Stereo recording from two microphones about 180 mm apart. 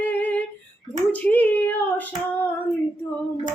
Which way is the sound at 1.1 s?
10° left (ahead or behind).